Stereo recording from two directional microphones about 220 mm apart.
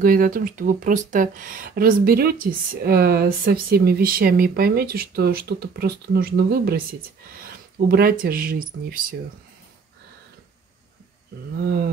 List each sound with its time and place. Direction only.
0.0 s speech: 40° right (ahead or behind)